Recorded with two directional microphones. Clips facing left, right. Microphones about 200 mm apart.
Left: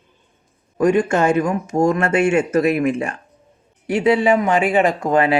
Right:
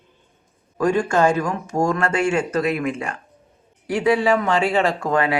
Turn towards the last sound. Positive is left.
turn(degrees=25)  # may be behind; listen again after turning